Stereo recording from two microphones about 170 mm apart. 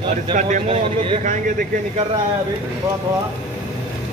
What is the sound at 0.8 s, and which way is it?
Speech, 30° right (ahead or behind).